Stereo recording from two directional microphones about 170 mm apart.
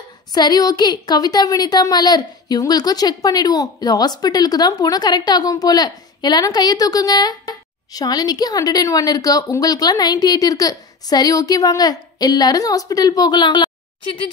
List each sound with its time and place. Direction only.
0.3 s a woman's voice: 25° left (ahead or behind)